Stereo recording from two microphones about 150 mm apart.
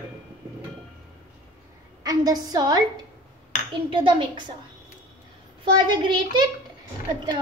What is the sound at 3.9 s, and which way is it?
Speech, 35° right (ahead or behind).